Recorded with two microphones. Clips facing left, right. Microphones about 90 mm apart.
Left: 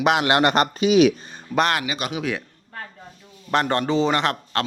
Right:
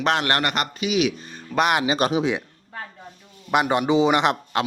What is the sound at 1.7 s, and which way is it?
Speech, 30° right (ahead or behind).